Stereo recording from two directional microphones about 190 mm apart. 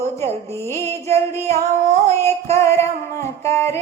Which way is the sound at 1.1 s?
35° right (ahead or behind).